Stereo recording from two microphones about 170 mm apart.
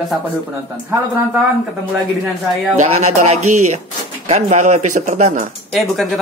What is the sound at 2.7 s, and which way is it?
Speech, 45° right (ahead or behind).